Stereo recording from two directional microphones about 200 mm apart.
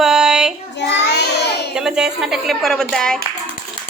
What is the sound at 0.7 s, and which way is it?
Child singing, 60° left (ahead or behind).